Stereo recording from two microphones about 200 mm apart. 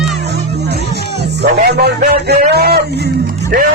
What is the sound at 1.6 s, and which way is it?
A man's voice, 50° right (ahead or behind).